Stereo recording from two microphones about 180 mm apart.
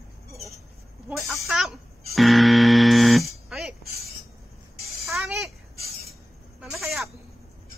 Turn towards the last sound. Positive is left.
turn(degrees=0)  # may be behind; listen again after turning